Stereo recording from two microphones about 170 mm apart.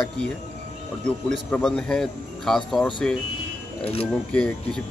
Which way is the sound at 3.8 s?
35° left (ahead or behind).